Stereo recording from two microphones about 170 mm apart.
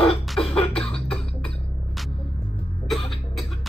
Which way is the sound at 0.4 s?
35° left (ahead or behind).